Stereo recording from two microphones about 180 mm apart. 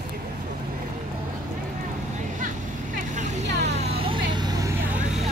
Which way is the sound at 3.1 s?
40° right (ahead or behind).